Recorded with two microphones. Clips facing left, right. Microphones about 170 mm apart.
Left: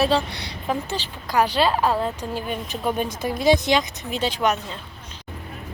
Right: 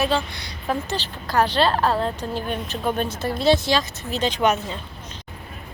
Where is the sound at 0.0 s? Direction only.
30° left (ahead or behind).